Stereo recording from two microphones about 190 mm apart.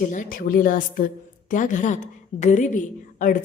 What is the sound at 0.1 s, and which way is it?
A woman's voice, 45° left (ahead or behind).